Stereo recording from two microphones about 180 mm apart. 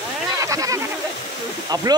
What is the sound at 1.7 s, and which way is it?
Speech, 20° right (ahead or behind).